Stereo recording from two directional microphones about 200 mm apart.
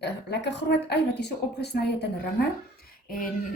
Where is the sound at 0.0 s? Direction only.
60° left (ahead or behind).